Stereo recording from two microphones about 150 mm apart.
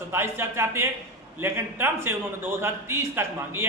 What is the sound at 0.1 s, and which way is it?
A man's voice, 15° right (ahead or behind).